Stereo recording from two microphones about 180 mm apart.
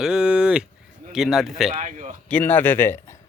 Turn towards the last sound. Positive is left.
turn(degrees=15)  # may be behind; listen again after turning